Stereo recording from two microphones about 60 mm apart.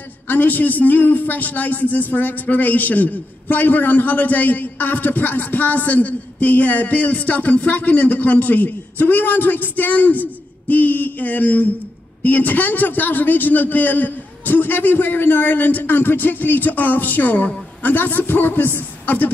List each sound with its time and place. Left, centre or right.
0.3 s a man's voice: left